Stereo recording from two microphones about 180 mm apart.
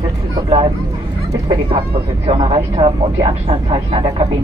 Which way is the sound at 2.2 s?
30° right (ahead or behind).